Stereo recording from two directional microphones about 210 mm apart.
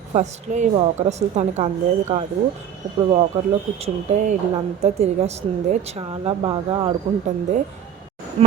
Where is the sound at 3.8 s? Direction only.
35° right (ahead or behind).